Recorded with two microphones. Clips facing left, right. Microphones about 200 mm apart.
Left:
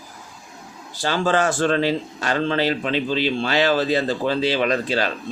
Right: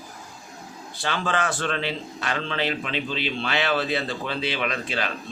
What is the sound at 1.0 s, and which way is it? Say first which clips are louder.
A man's voice: left 6 dB; 40° left (ahead or behind).